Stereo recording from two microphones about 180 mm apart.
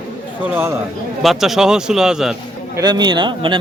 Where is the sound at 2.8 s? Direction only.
25° right (ahead or behind).